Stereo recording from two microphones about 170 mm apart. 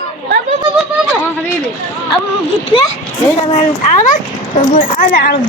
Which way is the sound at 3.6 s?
50° left (ahead or behind).